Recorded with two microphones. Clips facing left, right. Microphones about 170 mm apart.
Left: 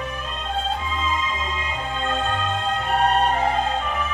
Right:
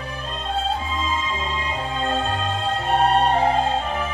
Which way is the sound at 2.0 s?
30° right (ahead or behind).